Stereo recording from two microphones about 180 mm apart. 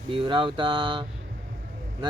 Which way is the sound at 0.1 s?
30° right (ahead or behind).